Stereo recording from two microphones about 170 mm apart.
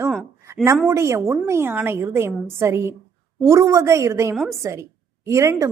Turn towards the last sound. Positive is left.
turn(degrees=-20)  # may be behind; listen again after turning